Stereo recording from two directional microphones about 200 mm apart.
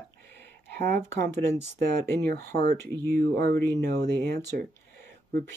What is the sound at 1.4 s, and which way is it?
Speech, 10° left (ahead or behind).